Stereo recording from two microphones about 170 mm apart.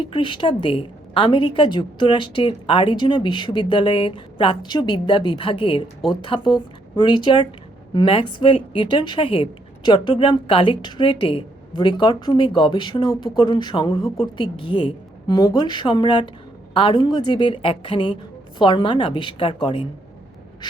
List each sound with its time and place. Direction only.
0.0 s a woman's voice: 30° left (ahead or behind)